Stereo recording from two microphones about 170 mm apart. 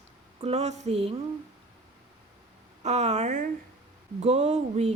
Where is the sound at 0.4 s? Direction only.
40° right (ahead or behind).